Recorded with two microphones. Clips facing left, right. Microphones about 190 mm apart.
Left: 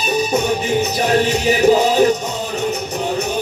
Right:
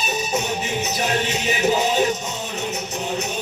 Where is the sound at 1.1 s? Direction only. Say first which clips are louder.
Left 10 dB; 35° left (ahead or behind).